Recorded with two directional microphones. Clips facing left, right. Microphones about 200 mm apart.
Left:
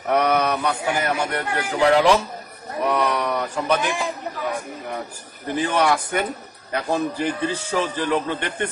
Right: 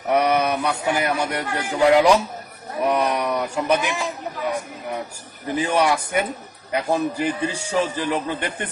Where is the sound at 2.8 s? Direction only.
10° right (ahead or behind).